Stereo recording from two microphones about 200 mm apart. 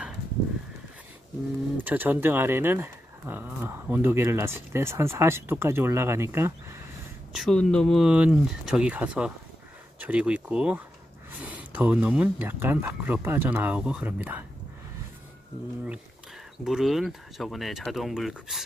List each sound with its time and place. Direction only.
1.8 s speech: 10° right (ahead or behind)
7.3 s speech: centre (ahead or behind)
16.6 s speech: centre (ahead or behind)